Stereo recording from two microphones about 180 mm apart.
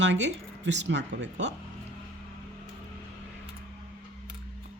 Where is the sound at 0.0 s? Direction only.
85° right.